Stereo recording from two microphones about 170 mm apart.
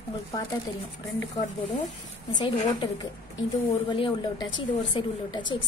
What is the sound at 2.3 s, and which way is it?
A woman's voice, 25° left (ahead or behind).